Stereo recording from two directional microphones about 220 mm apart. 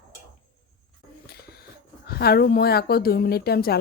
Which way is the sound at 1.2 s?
45° left (ahead or behind).